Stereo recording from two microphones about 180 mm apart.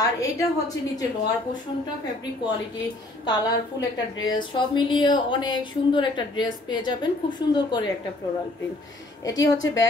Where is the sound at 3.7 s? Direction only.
90° left.